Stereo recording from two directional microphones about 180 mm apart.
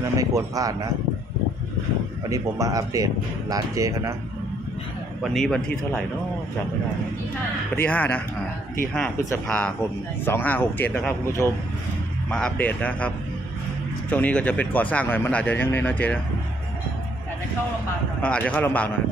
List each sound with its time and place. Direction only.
0.2 s speech: 20° right (ahead or behind)
2.2 s speech: 20° right (ahead or behind)
5.2 s speech: 5° left (ahead or behind)
7.7 s speech: 10° left (ahead or behind)
9.5 s speech: 5° left (ahead or behind)
14.1 s speech: 5° left (ahead or behind)
18.2 s speech: 10° left (ahead or behind)